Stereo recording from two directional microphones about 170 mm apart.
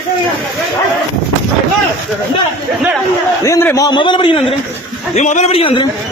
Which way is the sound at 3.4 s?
15° left (ahead or behind).